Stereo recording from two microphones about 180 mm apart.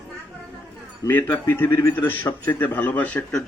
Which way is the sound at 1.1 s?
10° left (ahead or behind).